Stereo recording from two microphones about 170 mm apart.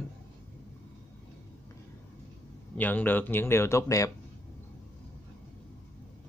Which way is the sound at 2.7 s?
10° left (ahead or behind).